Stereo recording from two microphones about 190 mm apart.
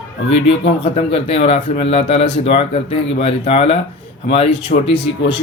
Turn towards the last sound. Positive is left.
turn(degrees=30)  # may be behind; listen again after turning